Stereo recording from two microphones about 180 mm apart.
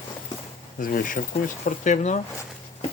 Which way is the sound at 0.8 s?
50° left (ahead or behind).